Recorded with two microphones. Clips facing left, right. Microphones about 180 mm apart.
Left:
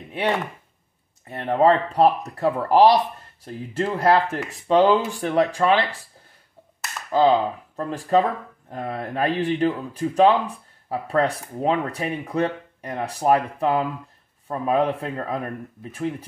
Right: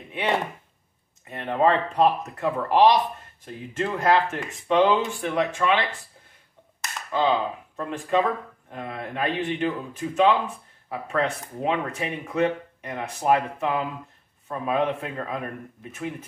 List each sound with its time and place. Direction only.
1.5 s speech: 35° left (ahead or behind)
7.1 s speech: 40° left (ahead or behind)